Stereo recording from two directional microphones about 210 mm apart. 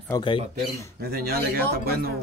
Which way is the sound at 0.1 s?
25° left (ahead or behind).